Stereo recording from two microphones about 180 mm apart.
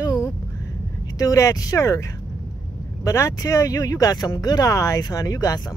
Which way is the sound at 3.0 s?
20° left (ahead or behind).